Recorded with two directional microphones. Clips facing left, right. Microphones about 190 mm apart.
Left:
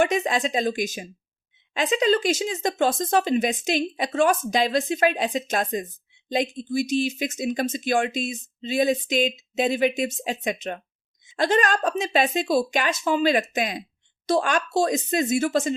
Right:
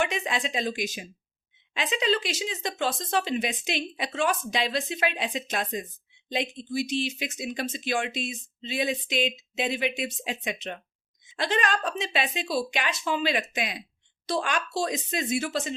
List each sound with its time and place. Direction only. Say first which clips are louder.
0.0 s speech: left 6 dB; 45° left (ahead or behind)